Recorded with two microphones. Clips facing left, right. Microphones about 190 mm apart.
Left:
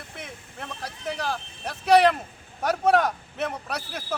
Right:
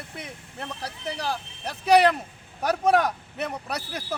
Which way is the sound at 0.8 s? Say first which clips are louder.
Left 1 dB; 10° right (ahead or behind).